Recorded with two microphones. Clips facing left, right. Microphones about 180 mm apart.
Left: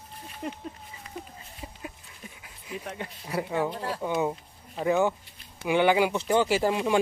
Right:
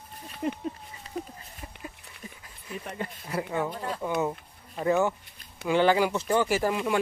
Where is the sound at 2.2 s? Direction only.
Centre (ahead or behind).